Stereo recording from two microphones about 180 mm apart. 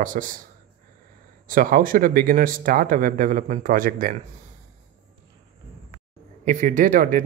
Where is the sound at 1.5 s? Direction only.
50° right (ahead or behind).